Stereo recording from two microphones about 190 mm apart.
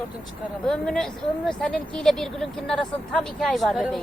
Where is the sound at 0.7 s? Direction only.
5° left (ahead or behind).